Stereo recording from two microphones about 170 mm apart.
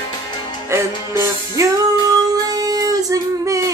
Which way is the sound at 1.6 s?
20° right (ahead or behind).